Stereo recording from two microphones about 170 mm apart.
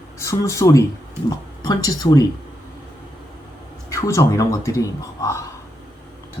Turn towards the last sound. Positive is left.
turn(degrees=20)  # may be behind; listen again after turning